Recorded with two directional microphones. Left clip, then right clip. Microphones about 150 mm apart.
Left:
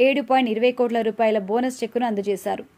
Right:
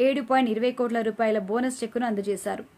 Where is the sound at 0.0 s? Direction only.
15° left (ahead or behind).